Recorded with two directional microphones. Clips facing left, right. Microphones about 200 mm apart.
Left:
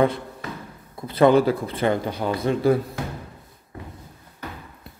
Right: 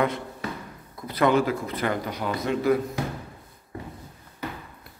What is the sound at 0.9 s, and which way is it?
Speech, 30° left (ahead or behind).